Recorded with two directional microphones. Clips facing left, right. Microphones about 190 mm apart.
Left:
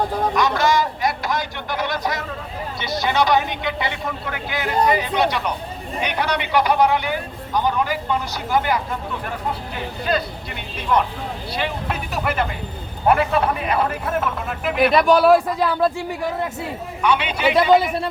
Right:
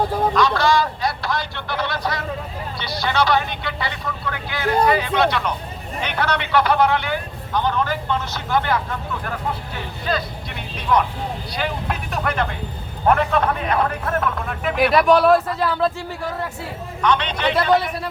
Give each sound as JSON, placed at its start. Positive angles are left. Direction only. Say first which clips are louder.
{"t": 0.3, "sound": "speech", "louder": "even", "side_deg": 20}
{"t": 10.5, "sound": "speech", "louder": "right 1 dB", "side_deg": 5}
{"t": 15.4, "sound": "speech", "louder": "left 1 dB", "side_deg": 15}